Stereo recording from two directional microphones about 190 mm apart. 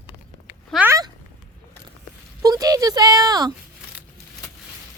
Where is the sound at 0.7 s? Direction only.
15° right (ahead or behind).